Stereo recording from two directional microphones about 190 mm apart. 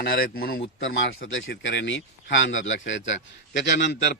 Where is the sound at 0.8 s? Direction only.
85° left.